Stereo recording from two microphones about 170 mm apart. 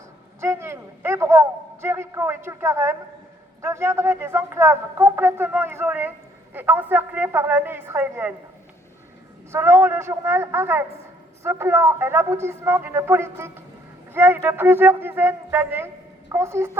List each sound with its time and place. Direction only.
0.3 s a sound: 15° right (ahead or behind)
3.6 s speech: 15° right (ahead or behind)
9.5 s speech: 15° right (ahead or behind)